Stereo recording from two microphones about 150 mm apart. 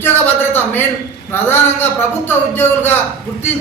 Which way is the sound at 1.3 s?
15° left (ahead or behind).